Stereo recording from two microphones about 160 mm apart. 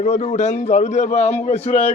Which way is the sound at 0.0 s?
45° left (ahead or behind).